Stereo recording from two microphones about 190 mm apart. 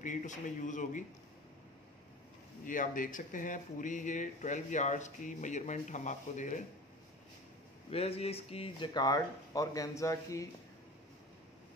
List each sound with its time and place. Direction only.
0.0 s speech: 40° left (ahead or behind)
2.6 s speech: 45° left (ahead or behind)
7.9 s speech: 30° left (ahead or behind); by 10.5 s 15° left (ahead or behind)